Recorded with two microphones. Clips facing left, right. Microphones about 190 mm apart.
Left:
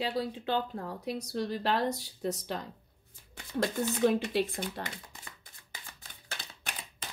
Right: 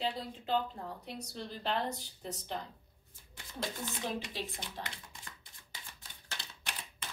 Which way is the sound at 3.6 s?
65° left (ahead or behind).